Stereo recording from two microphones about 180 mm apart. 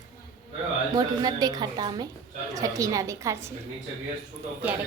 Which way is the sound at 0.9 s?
20° right (ahead or behind).